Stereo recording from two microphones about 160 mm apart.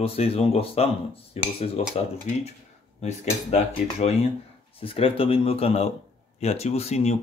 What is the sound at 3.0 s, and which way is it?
Speech, 45° left (ahead or behind).